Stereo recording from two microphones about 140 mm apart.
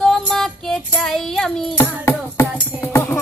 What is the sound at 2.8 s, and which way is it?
Music, 15° left (ahead or behind).